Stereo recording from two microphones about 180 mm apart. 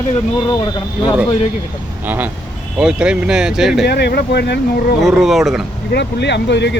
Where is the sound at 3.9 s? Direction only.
65° left (ahead or behind).